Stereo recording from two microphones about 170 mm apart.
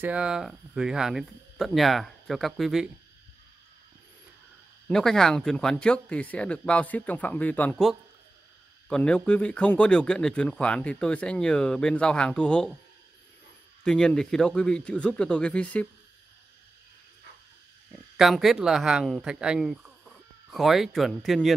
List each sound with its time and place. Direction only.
0.0 s a man's voice: 5° right (ahead or behind)
4.8 s a man's voice: 5° left (ahead or behind)
13.8 s a man's voice: 5° left (ahead or behind)
18.1 s speech: centre (ahead or behind)